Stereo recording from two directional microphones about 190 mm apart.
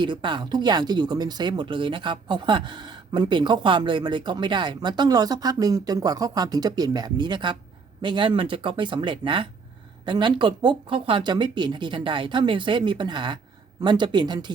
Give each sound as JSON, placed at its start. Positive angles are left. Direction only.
{"t": 0.0, "sound": "speech", "side_deg": -25}